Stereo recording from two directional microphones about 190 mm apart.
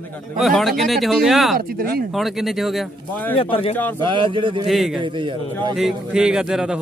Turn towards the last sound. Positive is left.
turn(degrees=-5)  # may be behind; listen again after turning